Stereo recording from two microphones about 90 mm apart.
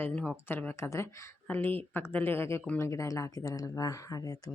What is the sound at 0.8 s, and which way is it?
Speech, 30° left (ahead or behind).